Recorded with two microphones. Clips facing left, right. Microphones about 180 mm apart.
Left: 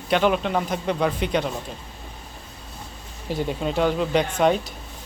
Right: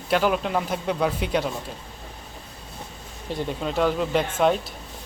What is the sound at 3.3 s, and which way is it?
Speech, 5° left (ahead or behind).